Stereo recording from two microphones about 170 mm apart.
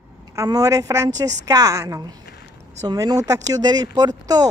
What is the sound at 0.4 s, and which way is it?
A woman's voice, 20° right (ahead or behind).